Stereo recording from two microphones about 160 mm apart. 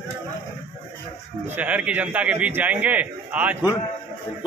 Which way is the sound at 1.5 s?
10° right (ahead or behind).